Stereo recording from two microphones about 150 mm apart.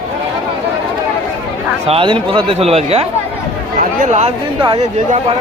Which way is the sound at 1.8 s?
40° right (ahead or behind).